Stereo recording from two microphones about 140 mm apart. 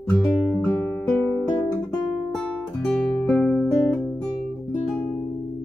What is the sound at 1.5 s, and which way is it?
Guitar, 30° left (ahead or behind).